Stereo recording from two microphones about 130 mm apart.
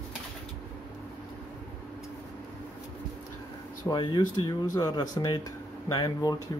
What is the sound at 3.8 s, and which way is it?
Speech, 35° left (ahead or behind).